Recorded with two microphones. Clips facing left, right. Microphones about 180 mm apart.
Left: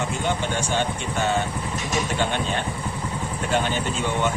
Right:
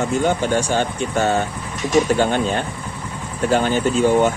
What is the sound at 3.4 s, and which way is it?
Speech, 40° right (ahead or behind).